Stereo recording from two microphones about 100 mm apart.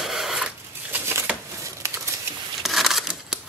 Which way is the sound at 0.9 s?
25° right (ahead or behind).